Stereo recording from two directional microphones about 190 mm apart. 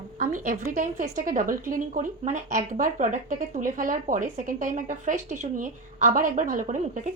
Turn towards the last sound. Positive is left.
turn(degrees=-40)  # may be behind; listen again after turning